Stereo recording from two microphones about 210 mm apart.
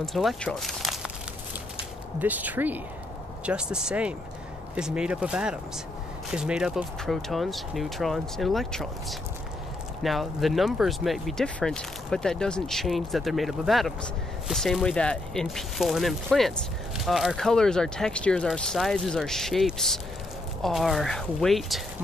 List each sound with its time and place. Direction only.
0.0 s speech: centre (ahead or behind)
2.1 s speech: 10° right (ahead or behind)
10.0 s speech: centre (ahead or behind)